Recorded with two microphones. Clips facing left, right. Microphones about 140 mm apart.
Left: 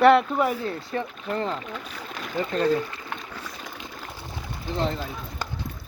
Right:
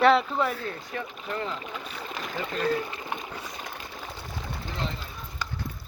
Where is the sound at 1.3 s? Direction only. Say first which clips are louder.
Left 5 dB; 40° left (ahead or behind).